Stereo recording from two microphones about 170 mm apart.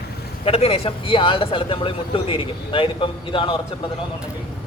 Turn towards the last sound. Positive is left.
turn(degrees=30)  # may be behind; listen again after turning